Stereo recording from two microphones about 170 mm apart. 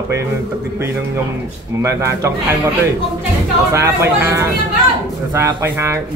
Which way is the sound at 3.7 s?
15° right (ahead or behind).